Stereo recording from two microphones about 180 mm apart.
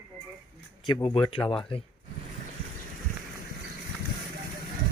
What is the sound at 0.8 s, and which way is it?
Speech, 30° left (ahead or behind).